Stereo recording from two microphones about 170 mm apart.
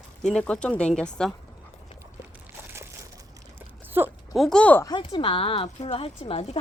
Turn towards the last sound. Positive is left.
turn(degrees=35)  # may be behind; listen again after turning